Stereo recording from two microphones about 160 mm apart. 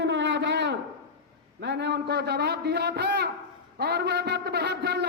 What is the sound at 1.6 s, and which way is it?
A man's voice, 90° right.